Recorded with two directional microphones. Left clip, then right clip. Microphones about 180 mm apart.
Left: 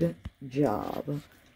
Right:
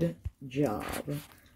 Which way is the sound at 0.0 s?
10° left (ahead or behind).